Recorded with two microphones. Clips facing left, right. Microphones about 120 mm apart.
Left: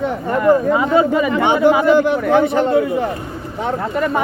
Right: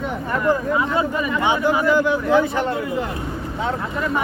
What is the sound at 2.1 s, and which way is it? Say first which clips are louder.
Speech: left 3 dB; 70° left (ahead or behind).